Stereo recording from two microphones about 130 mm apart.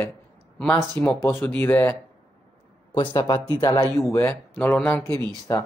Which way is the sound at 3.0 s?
40° left (ahead or behind).